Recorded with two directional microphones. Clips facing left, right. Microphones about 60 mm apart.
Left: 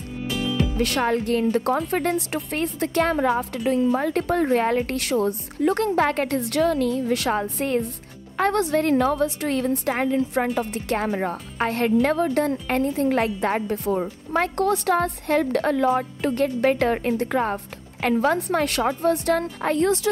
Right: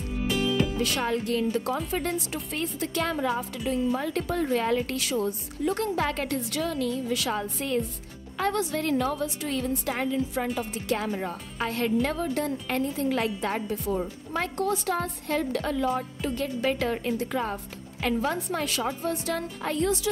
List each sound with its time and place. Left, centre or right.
0.3 s music: centre
0.7 s a woman's voice: left
14.3 s a woman's voice: left